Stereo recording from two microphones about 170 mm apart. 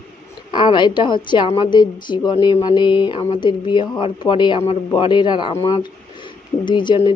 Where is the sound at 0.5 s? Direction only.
30° left (ahead or behind).